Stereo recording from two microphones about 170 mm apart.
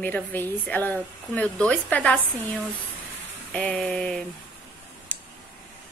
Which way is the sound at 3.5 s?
5° left (ahead or behind).